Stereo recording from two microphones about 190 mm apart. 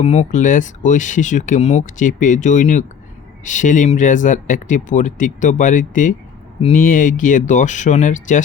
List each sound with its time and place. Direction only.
0.0 s speech: 40° left (ahead or behind)